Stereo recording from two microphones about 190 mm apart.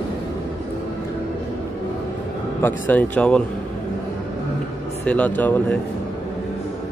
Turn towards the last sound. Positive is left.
turn(degrees=10)  # may be behind; listen again after turning